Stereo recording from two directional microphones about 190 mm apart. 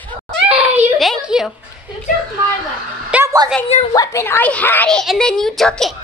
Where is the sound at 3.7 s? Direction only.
35° left (ahead or behind).